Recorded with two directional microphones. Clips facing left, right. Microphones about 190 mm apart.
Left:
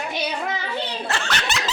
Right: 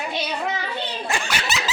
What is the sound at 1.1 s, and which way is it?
Snicker, 10° right (ahead or behind).